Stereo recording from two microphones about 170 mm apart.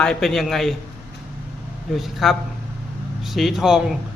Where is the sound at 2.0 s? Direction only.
Centre (ahead or behind).